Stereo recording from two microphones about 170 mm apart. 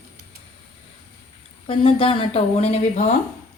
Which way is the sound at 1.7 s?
30° left (ahead or behind).